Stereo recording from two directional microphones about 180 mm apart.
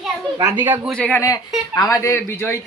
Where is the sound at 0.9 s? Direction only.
5° left (ahead or behind).